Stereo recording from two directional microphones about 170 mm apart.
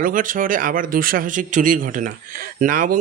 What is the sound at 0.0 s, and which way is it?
Speech, 50° right (ahead or behind).